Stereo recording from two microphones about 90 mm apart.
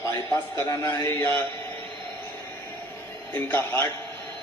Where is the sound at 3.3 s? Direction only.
25° left (ahead or behind).